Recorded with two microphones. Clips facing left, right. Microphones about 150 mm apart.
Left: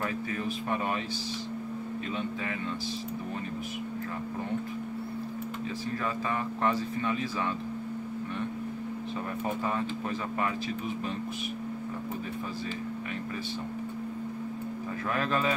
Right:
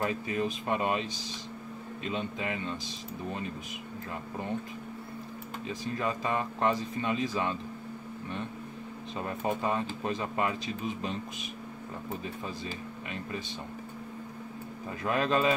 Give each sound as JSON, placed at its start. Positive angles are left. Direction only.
{"t": 0.0, "sound": "speech", "side_deg": -20}
{"t": 2.0, "sound": "speech", "side_deg": -20}
{"t": 6.0, "sound": "speech", "side_deg": -20}
{"t": 9.4, "sound": "speech", "side_deg": -20}
{"t": 15.0, "sound": "speech", "side_deg": -20}